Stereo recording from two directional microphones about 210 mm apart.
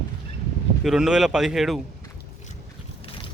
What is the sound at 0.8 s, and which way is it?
Speech, 5° right (ahead or behind).